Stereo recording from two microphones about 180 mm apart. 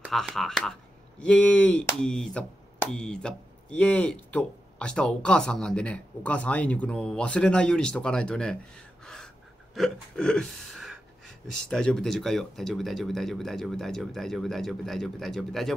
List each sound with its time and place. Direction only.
0.0 s speech: centre (ahead or behind)